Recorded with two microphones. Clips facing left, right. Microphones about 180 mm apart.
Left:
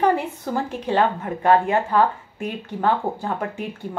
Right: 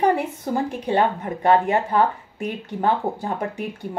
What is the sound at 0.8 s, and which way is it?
A woman's voice, 15° right (ahead or behind).